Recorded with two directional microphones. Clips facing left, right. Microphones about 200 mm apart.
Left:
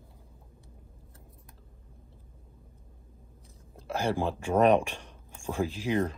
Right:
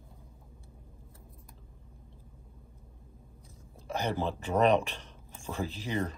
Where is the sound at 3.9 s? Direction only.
10° left (ahead or behind).